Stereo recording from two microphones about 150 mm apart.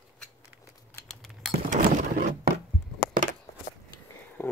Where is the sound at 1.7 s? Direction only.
55° right (ahead or behind).